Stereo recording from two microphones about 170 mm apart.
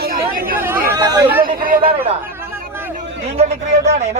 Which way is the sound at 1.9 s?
10° right (ahead or behind).